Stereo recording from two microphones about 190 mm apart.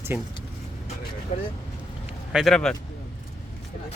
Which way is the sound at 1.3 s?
40° left (ahead or behind).